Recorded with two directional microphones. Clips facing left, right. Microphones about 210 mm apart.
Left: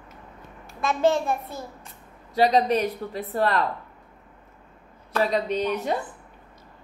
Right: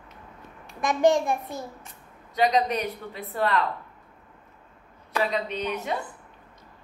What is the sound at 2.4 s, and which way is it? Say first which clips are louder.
Speech: left 3 dB; 35° left (ahead or behind).